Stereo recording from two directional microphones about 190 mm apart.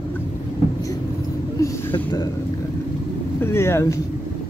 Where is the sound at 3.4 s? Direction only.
15° left (ahead or behind).